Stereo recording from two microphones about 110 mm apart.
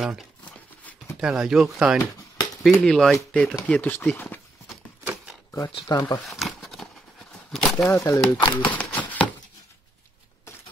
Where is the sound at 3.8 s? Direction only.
15° left (ahead or behind).